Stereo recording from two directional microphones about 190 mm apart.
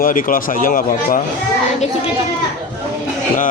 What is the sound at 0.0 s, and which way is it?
A man's voice, 45° left (ahead or behind).